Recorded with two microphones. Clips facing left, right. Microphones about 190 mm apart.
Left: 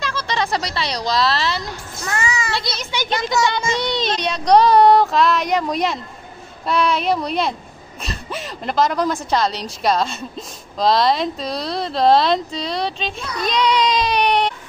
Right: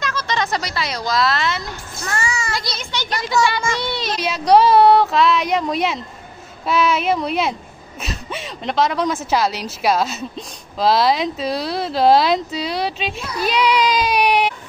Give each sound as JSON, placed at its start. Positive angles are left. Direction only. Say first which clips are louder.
{"t": 0.0, "sound": "a sound", "louder": "even", "side_deg": 30}
{"t": 0.6, "sound": "a woman's voice", "louder": "left 1 dB", "side_deg": 30}
{"t": 0.8, "sound": "a woman's voice", "louder": "even", "side_deg": 0}
{"t": 1.3, "sound": "a woman's voice", "louder": "even", "side_deg": 30}
{"t": 3.1, "sound": "speech", "louder": "right 1 dB", "side_deg": 20}
{"t": 3.6, "sound": "child singing", "louder": "left 1 dB", "side_deg": 20}
{"t": 4.0, "sound": "a sound", "louder": "left 1 dB", "side_deg": -5}
{"t": 6.6, "sound": "a woman's voice", "louder": "right 1 dB", "side_deg": -5}